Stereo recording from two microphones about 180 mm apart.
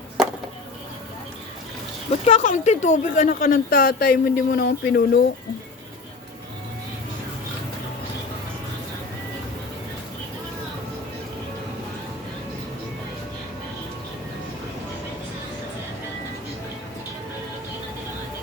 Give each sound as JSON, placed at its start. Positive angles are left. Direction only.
{"t": 2.2, "sound": "speech", "side_deg": 40}